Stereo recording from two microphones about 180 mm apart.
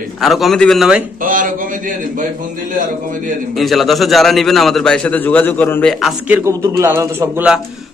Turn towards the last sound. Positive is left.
turn(degrees=-10)  # may be behind; listen again after turning